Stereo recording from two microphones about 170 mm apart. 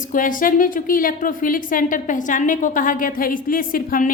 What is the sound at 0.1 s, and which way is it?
A woman's voice, 50° left (ahead or behind).